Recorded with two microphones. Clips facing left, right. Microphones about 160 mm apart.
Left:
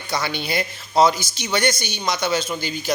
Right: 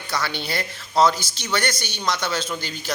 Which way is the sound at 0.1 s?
15° left (ahead or behind).